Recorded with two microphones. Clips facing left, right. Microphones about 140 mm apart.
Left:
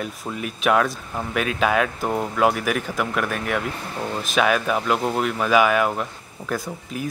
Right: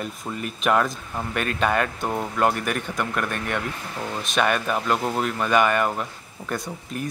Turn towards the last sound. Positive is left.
turn(degrees=0)  # may be behind; listen again after turning